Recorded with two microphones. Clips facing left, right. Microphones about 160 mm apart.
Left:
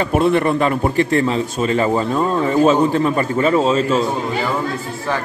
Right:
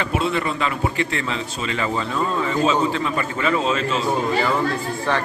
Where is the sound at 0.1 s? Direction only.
55° left (ahead or behind); by 4.0 s 35° left (ahead or behind).